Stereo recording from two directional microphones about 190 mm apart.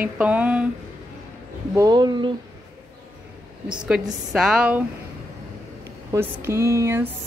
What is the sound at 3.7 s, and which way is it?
A woman's voice, 5° right (ahead or behind).